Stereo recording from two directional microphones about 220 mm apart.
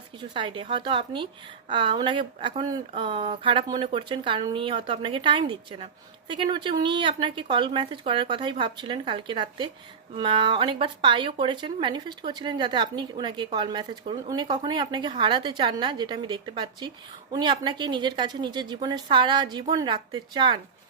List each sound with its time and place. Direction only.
0.2 s speech: 20° right (ahead or behind)